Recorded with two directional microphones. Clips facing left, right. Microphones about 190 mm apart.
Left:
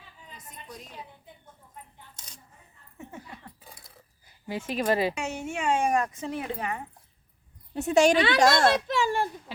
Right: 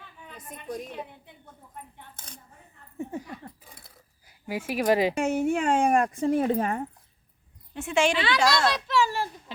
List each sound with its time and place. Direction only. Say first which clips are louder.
0.3 s a woman's voice: right 9 dB; 55° right (ahead or behind)
2.0 s a sound: right 5 dB; 55° right (ahead or behind)
3.0 s a sound: right 8 dB; 35° right (ahead or behind)
4.3 s speech: right 2 dB; 10° right (ahead or behind)
5.1 s speech: right 8 dB; 55° right (ahead or behind)
7.7 s a child's voice: left 4 dB; 40° left (ahead or behind)